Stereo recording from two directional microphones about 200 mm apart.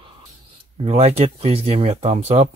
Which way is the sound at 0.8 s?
30° right (ahead or behind).